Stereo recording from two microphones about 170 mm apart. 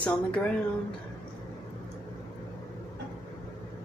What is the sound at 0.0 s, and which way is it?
Speech, 5° left (ahead or behind).